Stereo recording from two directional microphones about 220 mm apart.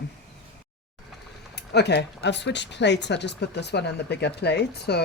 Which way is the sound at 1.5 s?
50° left (ahead or behind).